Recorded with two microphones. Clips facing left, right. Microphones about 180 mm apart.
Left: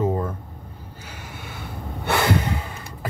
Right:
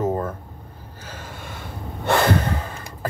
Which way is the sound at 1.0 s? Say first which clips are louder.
Right 4 dB; 10° left (ahead or behind).